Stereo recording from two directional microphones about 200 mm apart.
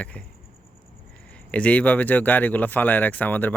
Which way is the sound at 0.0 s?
5° left (ahead or behind).